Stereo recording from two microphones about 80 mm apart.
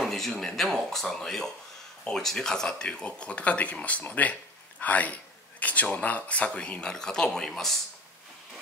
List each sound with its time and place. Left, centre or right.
0.0 s a man's voice: centre